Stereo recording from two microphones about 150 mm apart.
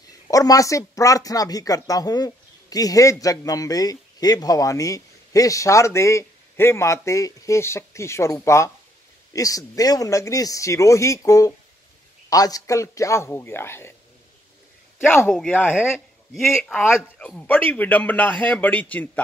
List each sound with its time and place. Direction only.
0.3 s speech: 20° left (ahead or behind)
15.0 s a man's voice: 15° left (ahead or behind); by 17.0 s centre (ahead or behind)
17.2 s a man's voice: 10° left (ahead or behind)